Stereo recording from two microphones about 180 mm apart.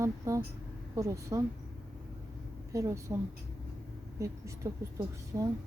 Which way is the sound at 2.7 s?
15° right (ahead or behind).